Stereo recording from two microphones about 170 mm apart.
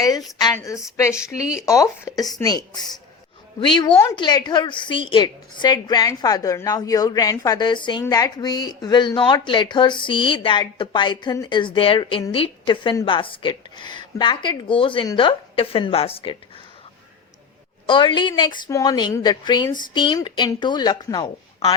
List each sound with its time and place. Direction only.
0.0 s a woman's voice: 20° left (ahead or behind)
4.1 s a woman's voice: 25° left (ahead or behind)
17.8 s a woman's voice: 30° left (ahead or behind)